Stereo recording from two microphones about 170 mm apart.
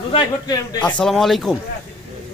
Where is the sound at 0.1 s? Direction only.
25° left (ahead or behind).